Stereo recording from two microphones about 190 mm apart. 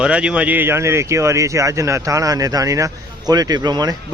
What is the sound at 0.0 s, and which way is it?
Speech, 5° right (ahead or behind).